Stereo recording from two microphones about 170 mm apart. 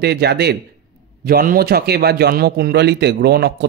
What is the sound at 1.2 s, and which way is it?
A man's voice, 60° right (ahead or behind).